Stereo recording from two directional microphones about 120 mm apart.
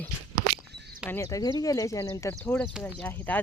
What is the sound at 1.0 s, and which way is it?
Speech, 25° left (ahead or behind).